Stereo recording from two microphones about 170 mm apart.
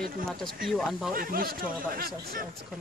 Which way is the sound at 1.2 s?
60° right (ahead or behind).